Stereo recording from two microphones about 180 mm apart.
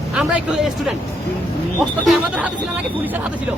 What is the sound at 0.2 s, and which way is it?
Speech, 5° right (ahead or behind).